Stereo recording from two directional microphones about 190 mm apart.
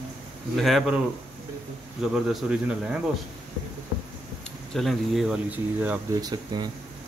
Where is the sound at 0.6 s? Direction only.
Centre (ahead or behind).